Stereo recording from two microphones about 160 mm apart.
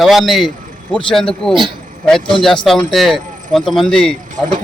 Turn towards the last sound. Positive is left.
turn(degrees=5)  # may be behind; listen again after turning